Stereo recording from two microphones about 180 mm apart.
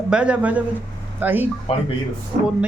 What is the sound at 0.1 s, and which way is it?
Speech, 5° right (ahead or behind).